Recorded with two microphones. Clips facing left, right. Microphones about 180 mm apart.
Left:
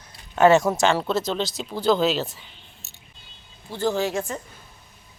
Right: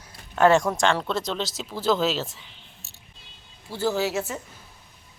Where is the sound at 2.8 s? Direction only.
30° right (ahead or behind).